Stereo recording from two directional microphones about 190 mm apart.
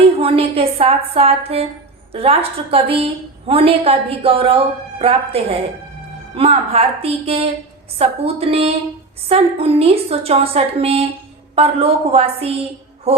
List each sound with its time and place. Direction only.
0.0 s a woman's voice: 30° right (ahead or behind)